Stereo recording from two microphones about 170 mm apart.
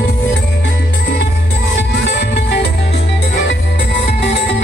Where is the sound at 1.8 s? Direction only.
85° left.